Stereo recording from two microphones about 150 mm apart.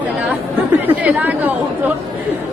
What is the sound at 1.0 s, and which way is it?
Speech, 10° right (ahead or behind).